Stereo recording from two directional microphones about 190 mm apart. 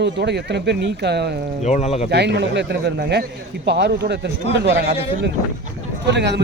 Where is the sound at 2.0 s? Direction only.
60° right (ahead or behind).